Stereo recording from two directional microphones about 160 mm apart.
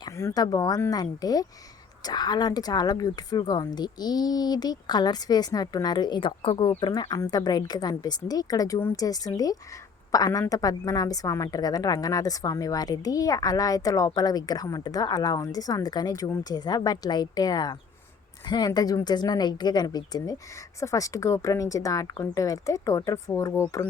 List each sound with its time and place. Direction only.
0.2 s a woman's voice: 20° left (ahead or behind)